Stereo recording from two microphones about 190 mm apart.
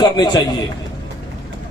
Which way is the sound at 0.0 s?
20° left (ahead or behind).